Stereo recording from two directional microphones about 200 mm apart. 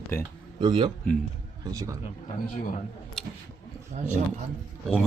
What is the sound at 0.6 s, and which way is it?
Speech, 25° right (ahead or behind).